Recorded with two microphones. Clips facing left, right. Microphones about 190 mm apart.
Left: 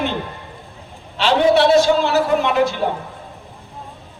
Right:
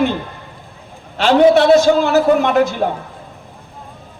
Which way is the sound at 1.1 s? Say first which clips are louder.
Right 4 dB; 45° right (ahead or behind).